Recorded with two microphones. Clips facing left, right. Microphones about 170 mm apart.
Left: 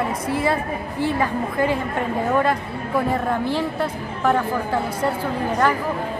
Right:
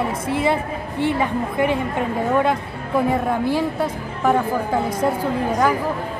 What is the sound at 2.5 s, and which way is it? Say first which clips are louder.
Speech: right 1 dB; 5° right (ahead or behind).